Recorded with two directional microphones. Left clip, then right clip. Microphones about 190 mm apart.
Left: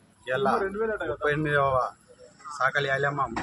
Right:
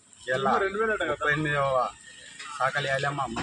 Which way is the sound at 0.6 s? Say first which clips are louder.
Right 2 dB; 40° right (ahead or behind).